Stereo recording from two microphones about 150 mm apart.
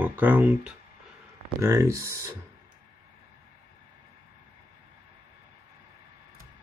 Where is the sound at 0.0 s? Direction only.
10° right (ahead or behind).